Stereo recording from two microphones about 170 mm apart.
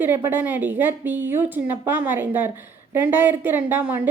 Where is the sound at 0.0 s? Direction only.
15° right (ahead or behind).